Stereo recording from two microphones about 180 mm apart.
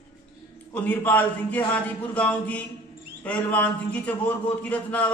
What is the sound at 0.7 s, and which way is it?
A man's voice, 10° left (ahead or behind).